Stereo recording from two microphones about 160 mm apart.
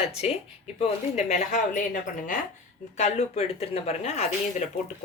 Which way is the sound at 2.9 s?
40° left (ahead or behind).